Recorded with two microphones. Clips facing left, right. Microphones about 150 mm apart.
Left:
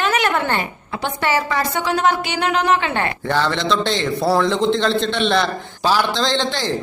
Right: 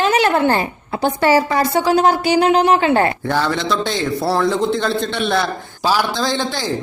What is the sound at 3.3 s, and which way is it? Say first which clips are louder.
A man's voice: even; 5° right (ahead or behind).